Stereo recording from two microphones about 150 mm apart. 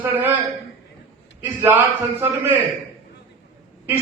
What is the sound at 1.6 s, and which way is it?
Speech, 15° right (ahead or behind).